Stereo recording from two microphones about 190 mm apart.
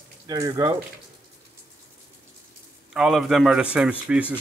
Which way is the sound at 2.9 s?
5° right (ahead or behind).